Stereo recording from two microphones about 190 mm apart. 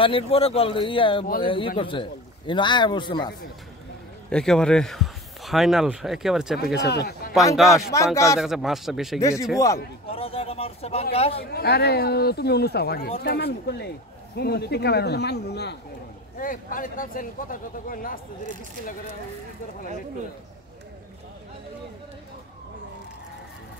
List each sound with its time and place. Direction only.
0.0 s speech: 30° left (ahead or behind)
4.3 s speech: 5° left (ahead or behind)
6.8 s speech: 60° left (ahead or behind)
7.5 s speech: centre (ahead or behind)
7.9 s speech: 15° left (ahead or behind)
8.4 s speech: centre (ahead or behind)
9.2 s speech: 15° left (ahead or behind)
10.0 s a man's voice: 30° left (ahead or behind)
11.3 s speech: 55° left (ahead or behind)
16.3 s speech: 45° left (ahead or behind)